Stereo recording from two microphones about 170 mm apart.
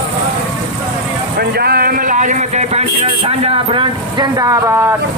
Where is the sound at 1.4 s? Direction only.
65° right (ahead or behind); by 4.9 s 20° right (ahead or behind).